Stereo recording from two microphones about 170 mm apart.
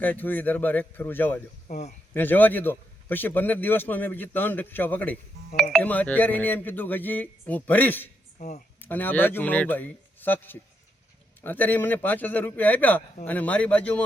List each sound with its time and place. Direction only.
0.0 s a man's voice: 10° left (ahead or behind)
1.6 s speech: 40° left (ahead or behind)
2.1 s a man's voice: 10° left (ahead or behind)
8.4 s speech: 45° left (ahead or behind)
8.8 s a man's voice: 10° left (ahead or behind)